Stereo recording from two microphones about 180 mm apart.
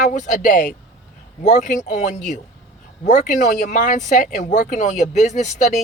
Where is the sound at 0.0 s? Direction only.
45° left (ahead or behind).